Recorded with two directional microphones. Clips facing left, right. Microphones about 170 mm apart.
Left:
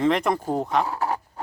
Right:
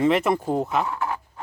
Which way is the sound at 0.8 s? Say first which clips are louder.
Left 1 dB; 35° left (ahead or behind).